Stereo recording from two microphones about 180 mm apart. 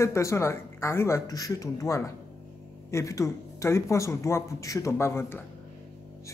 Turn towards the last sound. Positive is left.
turn(degrees=15)  # may be behind; listen again after turning